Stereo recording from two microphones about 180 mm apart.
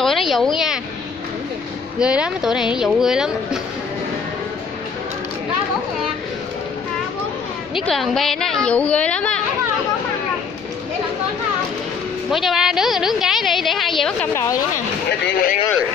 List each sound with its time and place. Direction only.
0.0 s a sound: centre (ahead or behind)
2.0 s a woman's voice: 5° right (ahead or behind)
7.7 s a woman's voice: centre (ahead or behind)
12.3 s a woman's voice: centre (ahead or behind)
15.2 s speech: 55° left (ahead or behind)